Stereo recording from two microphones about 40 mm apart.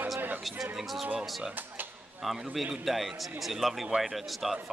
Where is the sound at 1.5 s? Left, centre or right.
Right.